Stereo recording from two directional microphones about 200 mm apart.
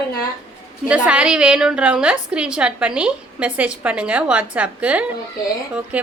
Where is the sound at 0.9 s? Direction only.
5° right (ahead or behind).